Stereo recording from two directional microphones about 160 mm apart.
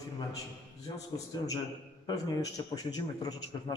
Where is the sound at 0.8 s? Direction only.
20° left (ahead or behind).